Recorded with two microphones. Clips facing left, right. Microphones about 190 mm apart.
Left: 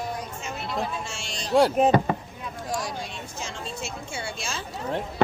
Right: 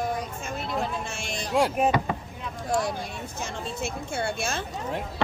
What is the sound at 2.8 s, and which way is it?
Speech, 55° right (ahead or behind).